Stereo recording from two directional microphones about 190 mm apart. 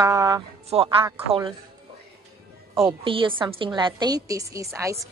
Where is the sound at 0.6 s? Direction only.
30° right (ahead or behind).